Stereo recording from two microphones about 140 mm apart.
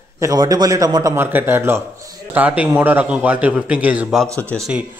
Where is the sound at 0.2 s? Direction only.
25° right (ahead or behind).